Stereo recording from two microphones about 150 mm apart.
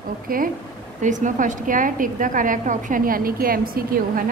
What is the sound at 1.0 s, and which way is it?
A woman's voice, 55° right (ahead or behind).